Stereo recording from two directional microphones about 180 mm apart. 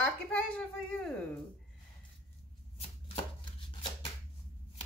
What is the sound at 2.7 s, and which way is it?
Chopping, 35° left (ahead or behind).